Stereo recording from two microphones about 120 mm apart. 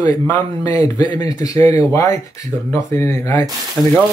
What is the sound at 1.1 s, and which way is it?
Speech, 30° left (ahead or behind).